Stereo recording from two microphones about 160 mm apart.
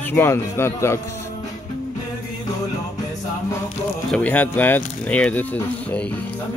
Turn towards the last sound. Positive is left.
turn(degrees=10)  # may be behind; listen again after turning